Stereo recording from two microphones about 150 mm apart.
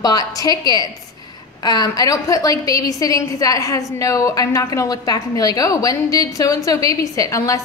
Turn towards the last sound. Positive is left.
turn(degrees=20)  # may be behind; listen again after turning